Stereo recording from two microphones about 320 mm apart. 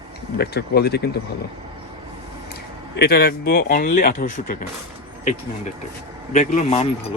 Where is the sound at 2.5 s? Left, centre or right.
Left.